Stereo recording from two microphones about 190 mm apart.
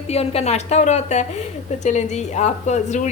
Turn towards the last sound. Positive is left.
turn(degrees=40)  # may be behind; listen again after turning